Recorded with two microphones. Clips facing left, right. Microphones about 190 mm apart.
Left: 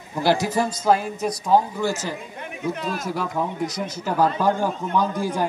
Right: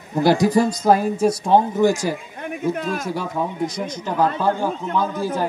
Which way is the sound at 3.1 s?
Centre (ahead or behind).